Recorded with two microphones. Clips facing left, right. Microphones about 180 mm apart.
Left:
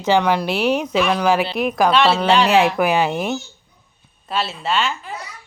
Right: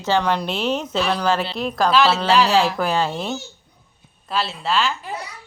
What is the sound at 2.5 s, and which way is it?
Speech, 20° left (ahead or behind).